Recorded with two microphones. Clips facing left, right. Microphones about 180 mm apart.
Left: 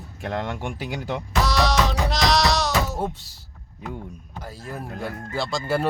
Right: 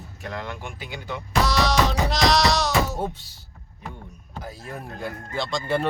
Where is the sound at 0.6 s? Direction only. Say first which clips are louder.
Left 6 dB; 80° left.